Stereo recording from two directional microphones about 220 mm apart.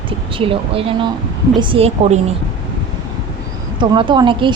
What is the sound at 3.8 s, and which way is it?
Speech, 20° right (ahead or behind).